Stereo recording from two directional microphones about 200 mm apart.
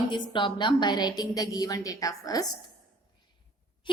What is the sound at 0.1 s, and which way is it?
A woman's voice, 25° left (ahead or behind).